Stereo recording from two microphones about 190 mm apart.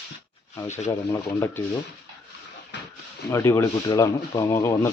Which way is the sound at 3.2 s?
15° left (ahead or behind).